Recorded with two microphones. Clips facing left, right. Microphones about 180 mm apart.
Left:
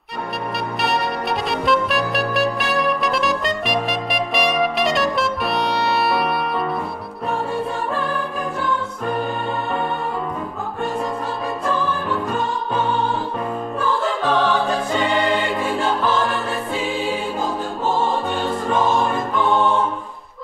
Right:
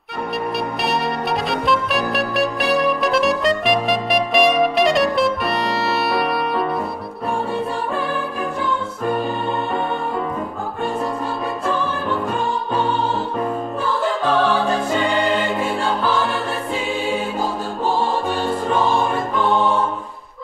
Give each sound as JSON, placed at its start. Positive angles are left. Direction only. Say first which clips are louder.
{"t": 0.8, "sound": "music", "louder": "left 1 dB", "side_deg": 0}